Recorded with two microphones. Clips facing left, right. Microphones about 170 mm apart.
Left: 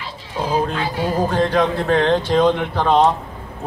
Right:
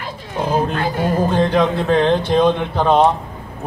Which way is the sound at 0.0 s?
55° right (ahead or behind).